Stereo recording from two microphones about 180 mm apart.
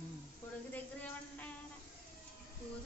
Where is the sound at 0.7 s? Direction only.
10° left (ahead or behind).